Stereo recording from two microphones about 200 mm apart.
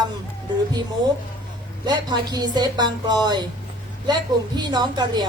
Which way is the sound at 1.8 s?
20° right (ahead or behind).